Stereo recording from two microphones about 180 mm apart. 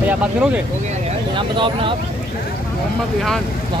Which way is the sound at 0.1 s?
5° right (ahead or behind).